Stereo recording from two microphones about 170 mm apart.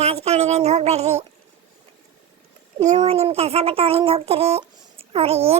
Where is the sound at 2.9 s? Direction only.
35° right (ahead or behind).